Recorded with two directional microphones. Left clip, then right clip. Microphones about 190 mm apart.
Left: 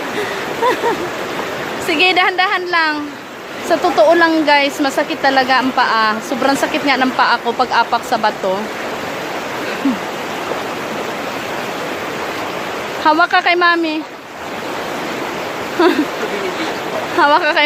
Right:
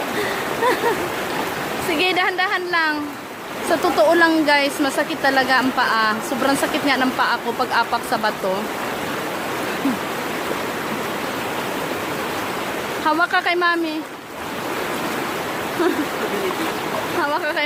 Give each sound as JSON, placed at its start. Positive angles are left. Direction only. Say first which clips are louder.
{"t": 1.9, "sound": "speech", "louder": "left 7 dB", "side_deg": 15}
{"t": 13.1, "sound": "speech", "louder": "left 7 dB", "side_deg": 20}
{"t": 17.2, "sound": "speech", "louder": "left 11 dB", "side_deg": 25}